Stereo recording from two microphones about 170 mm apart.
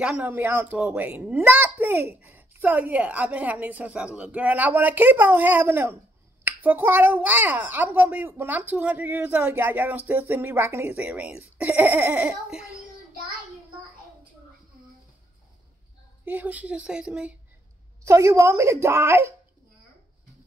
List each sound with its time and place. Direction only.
0.0 s speech: 10° right (ahead or behind)
16.3 s speech: 10° right (ahead or behind)
18.0 s speech: 15° right (ahead or behind)